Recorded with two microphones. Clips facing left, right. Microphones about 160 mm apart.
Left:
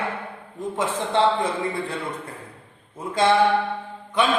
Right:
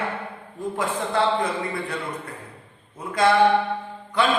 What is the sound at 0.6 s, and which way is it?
A man's voice, 25° left (ahead or behind).